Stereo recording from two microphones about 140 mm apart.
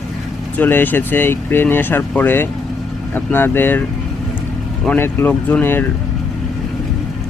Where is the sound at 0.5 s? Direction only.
10° left (ahead or behind).